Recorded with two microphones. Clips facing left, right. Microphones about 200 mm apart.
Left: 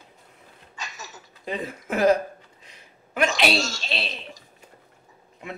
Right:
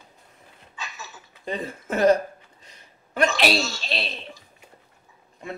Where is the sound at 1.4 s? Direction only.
Centre (ahead or behind).